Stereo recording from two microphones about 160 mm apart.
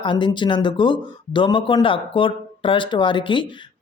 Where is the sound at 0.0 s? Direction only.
30° left (ahead or behind).